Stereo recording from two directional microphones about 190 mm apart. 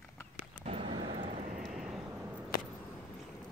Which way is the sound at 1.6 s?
Centre (ahead or behind).